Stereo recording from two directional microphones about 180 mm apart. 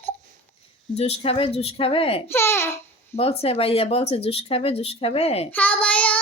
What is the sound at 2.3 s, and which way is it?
Speech, 15° left (ahead or behind).